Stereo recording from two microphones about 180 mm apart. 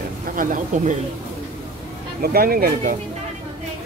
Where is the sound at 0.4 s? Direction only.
50° right (ahead or behind).